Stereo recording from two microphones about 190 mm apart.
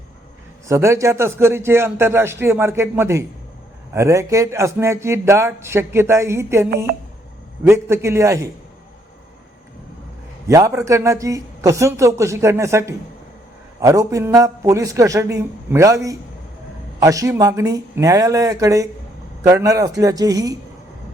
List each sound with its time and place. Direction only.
0.7 s speech: 15° right (ahead or behind)
10.4 s speech: 15° right (ahead or behind)